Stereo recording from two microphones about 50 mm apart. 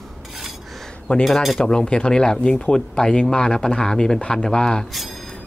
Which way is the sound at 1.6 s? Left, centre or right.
Centre.